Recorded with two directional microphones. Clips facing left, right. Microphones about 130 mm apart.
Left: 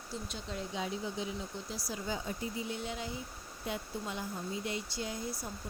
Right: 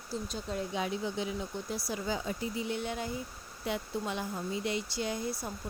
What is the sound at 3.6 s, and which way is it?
Speech, 80° right.